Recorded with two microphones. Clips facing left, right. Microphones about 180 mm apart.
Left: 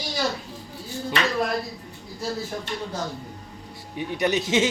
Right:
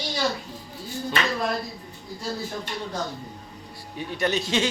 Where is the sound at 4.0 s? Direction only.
15° left (ahead or behind).